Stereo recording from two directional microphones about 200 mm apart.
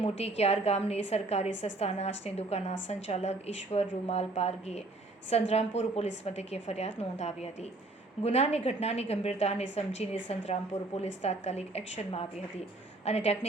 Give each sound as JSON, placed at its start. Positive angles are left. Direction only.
{"t": 0.0, "sound": "a woman's voice", "side_deg": 30}
{"t": 13.1, "sound": "a woman's voice", "side_deg": 30}